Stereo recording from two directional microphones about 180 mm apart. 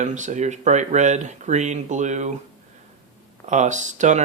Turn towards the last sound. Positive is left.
turn(degrees=-40)  # may be behind; listen again after turning